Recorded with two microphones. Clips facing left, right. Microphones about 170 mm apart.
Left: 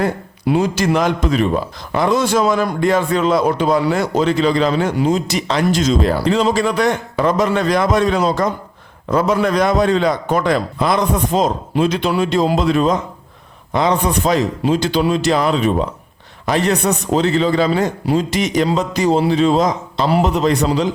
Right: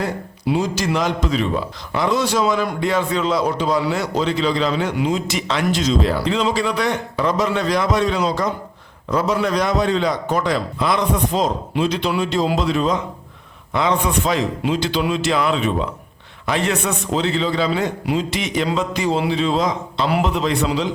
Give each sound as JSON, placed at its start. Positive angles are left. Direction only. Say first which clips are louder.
{"t": 0.0, "sound": "a man's voice", "louder": "left 4 dB", "side_deg": 55}
{"t": 13.7, "sound": "a man's voice", "louder": "left 3 dB", "side_deg": 35}